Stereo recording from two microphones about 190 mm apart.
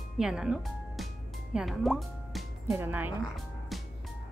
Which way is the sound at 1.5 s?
Centre (ahead or behind).